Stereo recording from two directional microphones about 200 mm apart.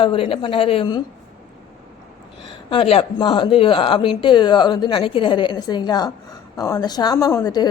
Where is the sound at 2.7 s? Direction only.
30° left (ahead or behind).